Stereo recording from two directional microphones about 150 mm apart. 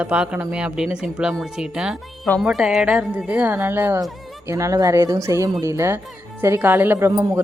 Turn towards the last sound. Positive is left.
turn(degrees=-15)  # may be behind; listen again after turning